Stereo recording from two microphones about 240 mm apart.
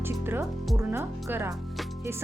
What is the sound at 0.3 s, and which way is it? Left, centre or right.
Speech, centre.